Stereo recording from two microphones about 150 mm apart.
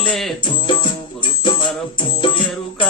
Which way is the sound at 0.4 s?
30° left (ahead or behind).